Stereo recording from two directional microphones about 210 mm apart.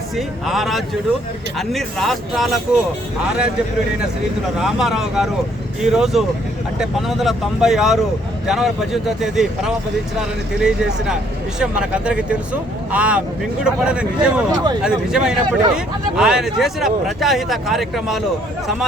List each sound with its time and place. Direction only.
0.2 s speech: centre (ahead or behind)
4.5 s speech: centre (ahead or behind)
14.5 s speech: 20° right (ahead or behind)
14.8 s speech: 5° right (ahead or behind)